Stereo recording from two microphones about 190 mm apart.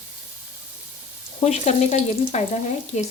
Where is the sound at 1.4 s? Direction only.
35° left (ahead or behind).